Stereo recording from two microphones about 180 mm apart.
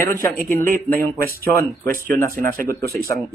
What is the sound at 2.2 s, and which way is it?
Speech, 50° right (ahead or behind).